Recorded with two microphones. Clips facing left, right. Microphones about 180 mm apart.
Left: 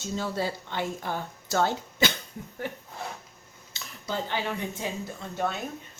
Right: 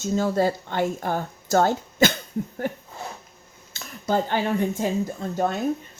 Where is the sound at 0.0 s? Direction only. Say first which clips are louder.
Right 8 dB; 45° right (ahead or behind).